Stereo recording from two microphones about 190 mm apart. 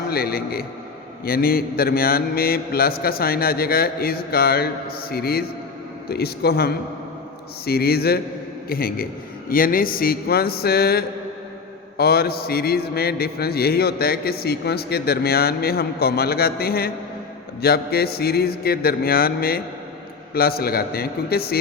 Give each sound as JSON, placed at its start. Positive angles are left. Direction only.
{"t": 0.1, "sound": "mantra", "side_deg": 55}
{"t": 6.1, "sound": "a man's voice", "side_deg": 55}
{"t": 8.7, "sound": "mantra", "side_deg": 50}
{"t": 11.9, "sound": "a man's voice", "side_deg": 55}
{"t": 17.6, "sound": "mantra", "side_deg": 55}